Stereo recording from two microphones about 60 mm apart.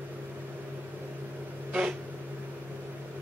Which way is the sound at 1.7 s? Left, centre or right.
Centre.